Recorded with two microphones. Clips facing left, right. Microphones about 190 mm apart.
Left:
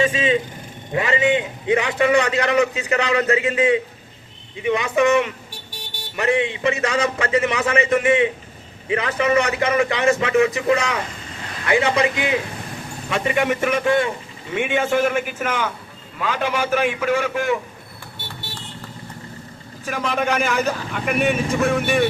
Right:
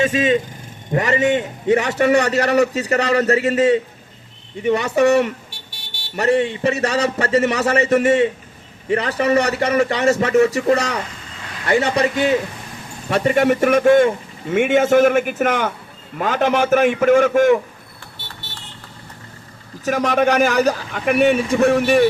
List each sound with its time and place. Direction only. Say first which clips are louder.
0.0 s a man's voice: right 2 dB; 45° right (ahead or behind)
13.1 s a man's voice: right 5 dB; 40° right (ahead or behind)
19.8 s speech: right 6 dB; 45° right (ahead or behind)